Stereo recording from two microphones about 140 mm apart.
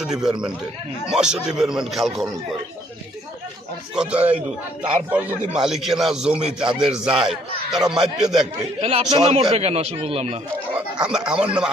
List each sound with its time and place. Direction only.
0.0 s a man's voice: 5° right (ahead or behind)
3.9 s a man's voice: 5° right (ahead or behind)
8.8 s speech: 45° right (ahead or behind)
10.8 s speech: 5° right (ahead or behind)